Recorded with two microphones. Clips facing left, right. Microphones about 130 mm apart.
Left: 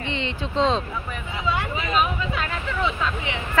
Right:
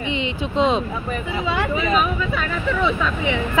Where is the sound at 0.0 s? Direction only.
15° right (ahead or behind).